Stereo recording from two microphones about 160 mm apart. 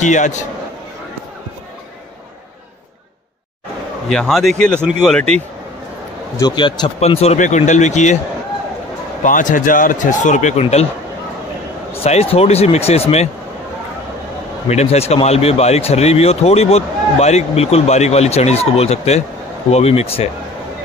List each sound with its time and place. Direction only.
0.0 s speech: 50° left (ahead or behind)
4.1 s speech: 5° left (ahead or behind)
6.3 s speech: 25° left (ahead or behind)
7.0 s speech: 40° left (ahead or behind)
9.2 s speech: 55° left (ahead or behind)
11.9 s speech: 40° left (ahead or behind)
14.7 s speech: 40° left (ahead or behind)